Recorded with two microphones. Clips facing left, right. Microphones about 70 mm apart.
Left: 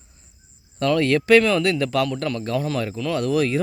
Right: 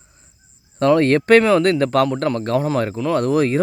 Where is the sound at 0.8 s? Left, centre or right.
Right.